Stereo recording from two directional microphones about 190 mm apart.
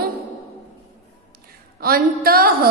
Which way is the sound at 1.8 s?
50° right (ahead or behind).